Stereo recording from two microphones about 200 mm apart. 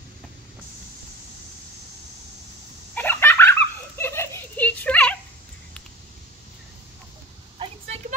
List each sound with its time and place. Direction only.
2.9 s giggle: 10° left (ahead or behind)
7.5 s vehicle: 30° right (ahead or behind)